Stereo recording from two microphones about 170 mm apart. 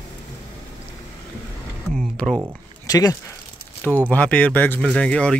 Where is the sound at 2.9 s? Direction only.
20° left (ahead or behind).